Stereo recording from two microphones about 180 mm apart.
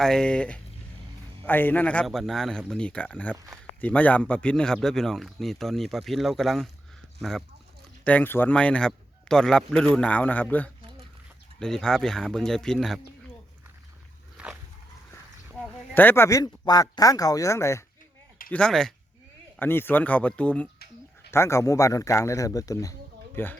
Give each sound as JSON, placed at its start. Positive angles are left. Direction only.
{"t": 0.0, "sound": "a man's voice", "side_deg": 5}
{"t": 14.3, "sound": "a sound", "side_deg": -5}
{"t": 16.0, "sound": "a man's voice", "side_deg": 10}
{"t": 18.5, "sound": "a man's voice", "side_deg": 5}